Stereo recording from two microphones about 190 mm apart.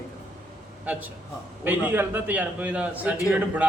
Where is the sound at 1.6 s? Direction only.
10° right (ahead or behind).